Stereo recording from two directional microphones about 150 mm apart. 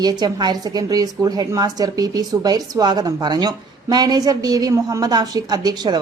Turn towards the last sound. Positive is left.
turn(degrees=-25)  # may be behind; listen again after turning